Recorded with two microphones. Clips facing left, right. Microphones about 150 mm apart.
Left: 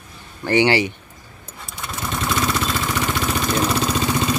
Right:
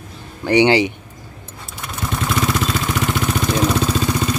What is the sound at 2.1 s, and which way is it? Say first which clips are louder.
Vehicle: right 2 dB; centre (ahead or behind).